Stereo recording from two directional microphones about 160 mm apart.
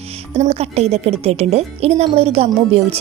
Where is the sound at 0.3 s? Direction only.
40° right (ahead or behind).